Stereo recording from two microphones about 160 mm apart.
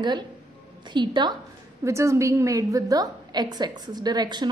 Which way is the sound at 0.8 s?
30° right (ahead or behind).